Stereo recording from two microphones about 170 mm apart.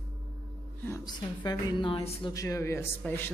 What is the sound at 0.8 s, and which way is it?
A woman's voice, 20° left (ahead or behind).